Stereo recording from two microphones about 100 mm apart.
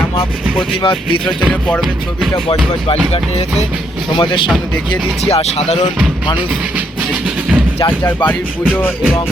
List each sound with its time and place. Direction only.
0.8 s speech: 60° left (ahead or behind)
4.2 s speech: 55° left (ahead or behind)
5.2 s speech: 90° left
6.7 s music: 10° right (ahead or behind)
8.0 s speech: 20° left (ahead or behind)